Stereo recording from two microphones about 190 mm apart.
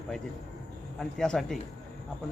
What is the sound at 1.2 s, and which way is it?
Speech, centre (ahead or behind).